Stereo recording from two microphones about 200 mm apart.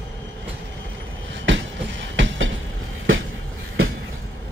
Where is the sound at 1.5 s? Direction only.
70° right (ahead or behind).